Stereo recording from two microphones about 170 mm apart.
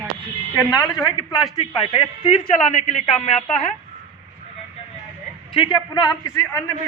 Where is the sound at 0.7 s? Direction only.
5° right (ahead or behind).